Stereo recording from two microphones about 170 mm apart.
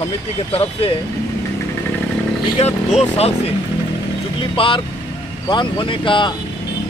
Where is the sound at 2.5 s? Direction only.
40° left (ahead or behind).